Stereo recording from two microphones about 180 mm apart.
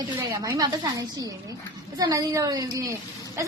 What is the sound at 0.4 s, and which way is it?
A woman's voice, 20° right (ahead or behind).